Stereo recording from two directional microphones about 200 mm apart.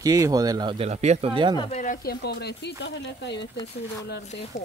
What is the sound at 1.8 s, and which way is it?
Speech, 45° left (ahead or behind).